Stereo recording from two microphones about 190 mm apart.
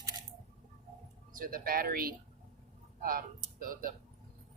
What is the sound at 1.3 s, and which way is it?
Speech, 45° right (ahead or behind).